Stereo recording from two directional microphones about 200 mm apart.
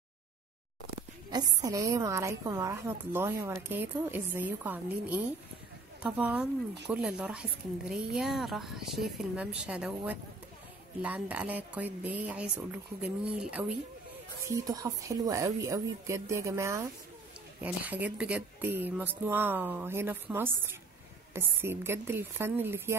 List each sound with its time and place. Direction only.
1.3 s a woman's voice: 20° right (ahead or behind)
14.4 s a woman's voice: 15° right (ahead or behind)